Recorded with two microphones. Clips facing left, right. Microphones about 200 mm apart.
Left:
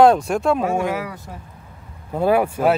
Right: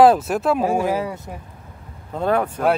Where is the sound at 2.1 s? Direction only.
10° left (ahead or behind).